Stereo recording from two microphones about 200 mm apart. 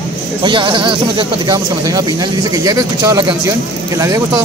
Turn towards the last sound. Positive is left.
turn(degrees=-15)  # may be behind; listen again after turning